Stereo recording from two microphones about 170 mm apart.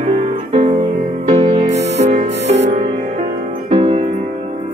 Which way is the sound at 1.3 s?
30° right (ahead or behind).